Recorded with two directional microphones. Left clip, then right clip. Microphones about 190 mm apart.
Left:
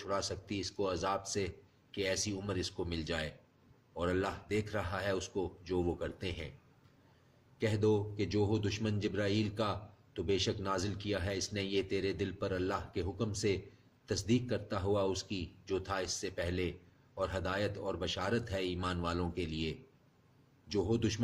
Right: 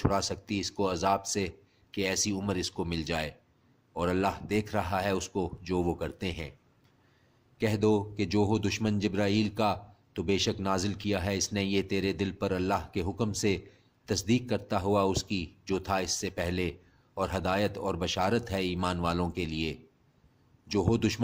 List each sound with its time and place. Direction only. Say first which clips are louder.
0.1 s speech: right 6 dB; 50° right (ahead or behind)
7.6 s speech: right 5 dB; 50° right (ahead or behind)